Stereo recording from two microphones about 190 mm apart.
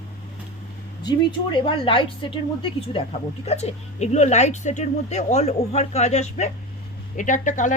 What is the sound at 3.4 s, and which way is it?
Speech, 35° left (ahead or behind).